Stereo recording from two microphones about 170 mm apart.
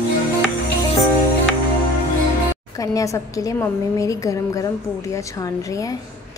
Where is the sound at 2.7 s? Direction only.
20° left (ahead or behind).